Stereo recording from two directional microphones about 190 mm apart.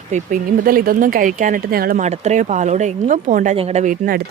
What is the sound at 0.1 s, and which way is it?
Speech, 45° right (ahead or behind).